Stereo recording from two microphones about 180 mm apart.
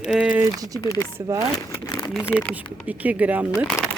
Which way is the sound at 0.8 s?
15° left (ahead or behind).